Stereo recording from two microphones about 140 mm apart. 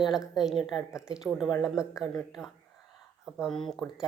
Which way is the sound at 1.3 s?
5° right (ahead or behind).